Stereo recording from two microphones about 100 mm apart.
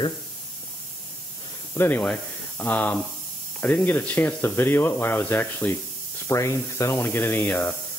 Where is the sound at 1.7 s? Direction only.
25° left (ahead or behind).